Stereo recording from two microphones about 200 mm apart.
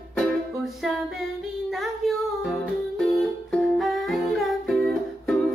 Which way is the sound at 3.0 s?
Centre (ahead or behind).